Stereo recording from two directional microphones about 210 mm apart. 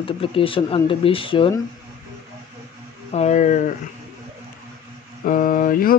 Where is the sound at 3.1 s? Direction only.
30° left (ahead or behind).